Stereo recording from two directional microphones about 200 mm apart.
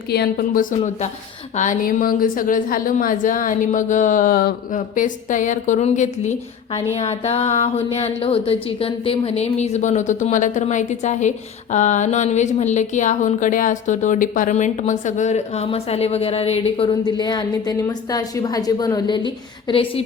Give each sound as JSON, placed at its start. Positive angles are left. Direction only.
{"t": 0.1, "sound": "a woman's voice", "side_deg": 50}